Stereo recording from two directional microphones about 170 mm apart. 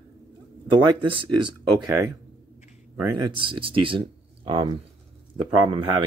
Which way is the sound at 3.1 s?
30° right (ahead or behind).